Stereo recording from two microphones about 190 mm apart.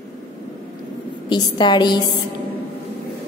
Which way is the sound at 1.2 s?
20° left (ahead or behind).